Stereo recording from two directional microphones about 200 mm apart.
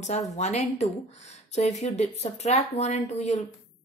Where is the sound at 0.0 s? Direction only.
35° left (ahead or behind).